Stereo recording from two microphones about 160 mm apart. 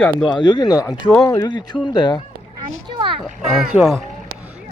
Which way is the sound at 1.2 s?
20° left (ahead or behind).